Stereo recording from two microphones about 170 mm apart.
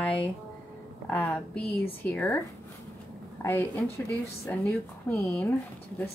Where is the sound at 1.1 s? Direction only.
5° left (ahead or behind).